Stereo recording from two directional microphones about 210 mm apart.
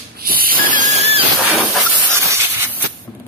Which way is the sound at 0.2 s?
45° right (ahead or behind).